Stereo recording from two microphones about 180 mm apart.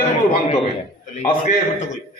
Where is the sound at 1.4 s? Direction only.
45° left (ahead or behind).